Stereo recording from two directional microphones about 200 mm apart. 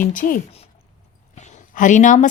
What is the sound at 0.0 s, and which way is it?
Speech, 40° left (ahead or behind).